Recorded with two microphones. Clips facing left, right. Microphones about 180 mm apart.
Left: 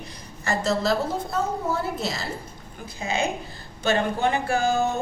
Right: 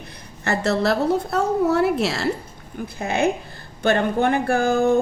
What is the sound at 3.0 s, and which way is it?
A woman's voice, 60° right (ahead or behind).